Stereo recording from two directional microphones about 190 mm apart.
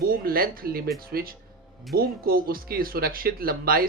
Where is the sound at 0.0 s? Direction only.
50° right (ahead or behind).